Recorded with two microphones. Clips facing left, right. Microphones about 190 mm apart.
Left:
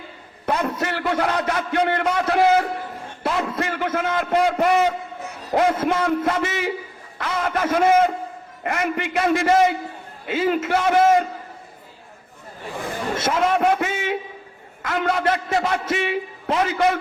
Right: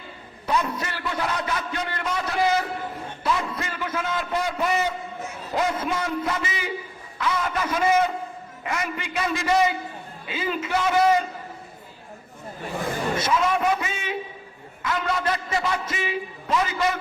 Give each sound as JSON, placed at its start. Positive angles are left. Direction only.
{"t": 0.4, "sound": "a man's voice", "side_deg": 60}
{"t": 13.2, "sound": "a man's voice", "side_deg": 50}